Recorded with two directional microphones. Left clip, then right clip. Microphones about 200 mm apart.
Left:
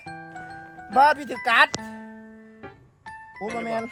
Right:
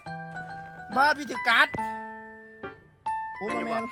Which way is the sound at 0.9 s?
20° left (ahead or behind).